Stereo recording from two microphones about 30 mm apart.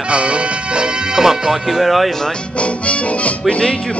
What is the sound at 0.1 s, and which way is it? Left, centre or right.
Music, right.